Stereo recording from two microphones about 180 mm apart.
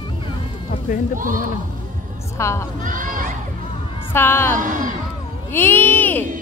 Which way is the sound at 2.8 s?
45° right (ahead or behind).